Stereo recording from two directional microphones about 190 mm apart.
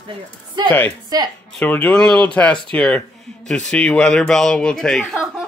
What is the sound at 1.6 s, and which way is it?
Speech, 5° left (ahead or behind).